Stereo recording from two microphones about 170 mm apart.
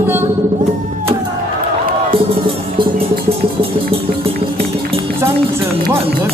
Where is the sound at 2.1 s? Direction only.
30° right (ahead or behind).